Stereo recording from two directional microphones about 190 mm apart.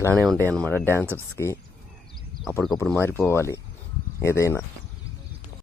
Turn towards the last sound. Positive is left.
turn(degrees=15)  # may be behind; listen again after turning